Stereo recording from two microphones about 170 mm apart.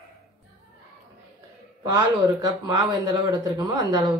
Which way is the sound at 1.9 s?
20° right (ahead or behind).